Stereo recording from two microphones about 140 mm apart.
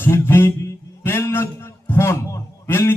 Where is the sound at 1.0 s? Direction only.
20° left (ahead or behind).